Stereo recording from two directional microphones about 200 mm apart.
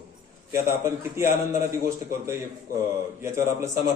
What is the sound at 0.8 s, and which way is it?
A man's voice, 15° right (ahead or behind).